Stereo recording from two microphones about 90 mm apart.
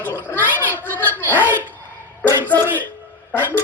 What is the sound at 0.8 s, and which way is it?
Speech, 20° left (ahead or behind).